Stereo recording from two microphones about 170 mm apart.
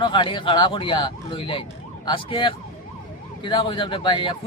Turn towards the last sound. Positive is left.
turn(degrees=30)  # may be behind; listen again after turning